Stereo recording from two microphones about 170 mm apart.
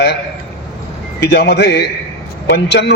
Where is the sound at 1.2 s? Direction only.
80° left.